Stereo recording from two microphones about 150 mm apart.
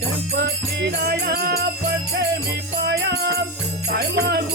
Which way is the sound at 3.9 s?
90° right.